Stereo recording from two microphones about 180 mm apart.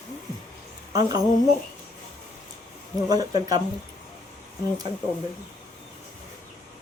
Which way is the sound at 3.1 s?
20° right (ahead or behind).